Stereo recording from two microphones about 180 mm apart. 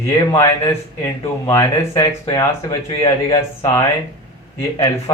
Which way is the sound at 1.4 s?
15° left (ahead or behind).